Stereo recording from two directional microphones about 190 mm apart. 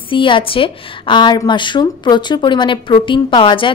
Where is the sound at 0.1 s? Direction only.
25° left (ahead or behind).